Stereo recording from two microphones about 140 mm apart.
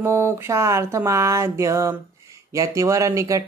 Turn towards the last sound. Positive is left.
turn(degrees=-20)  # may be behind; listen again after turning